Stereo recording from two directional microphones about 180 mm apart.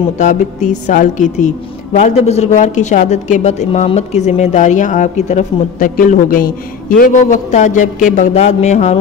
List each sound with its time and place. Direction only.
0.2 s a woman's voice: 40° left (ahead or behind)